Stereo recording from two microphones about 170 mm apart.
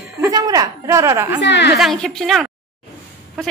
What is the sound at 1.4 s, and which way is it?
Speech, 90° left.